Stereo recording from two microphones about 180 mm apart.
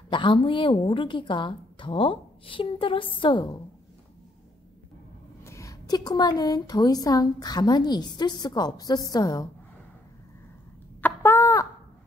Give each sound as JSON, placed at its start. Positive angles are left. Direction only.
{"t": 0.1, "sound": "a woman's voice", "side_deg": 25}
{"t": 5.4, "sound": "a woman's voice", "side_deg": 15}
{"t": 11.0, "sound": "a sound", "side_deg": 10}